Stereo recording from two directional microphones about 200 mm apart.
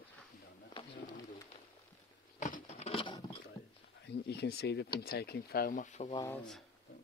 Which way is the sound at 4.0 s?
55° left (ahead or behind).